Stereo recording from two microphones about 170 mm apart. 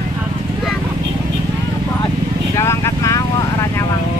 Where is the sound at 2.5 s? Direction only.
15° left (ahead or behind).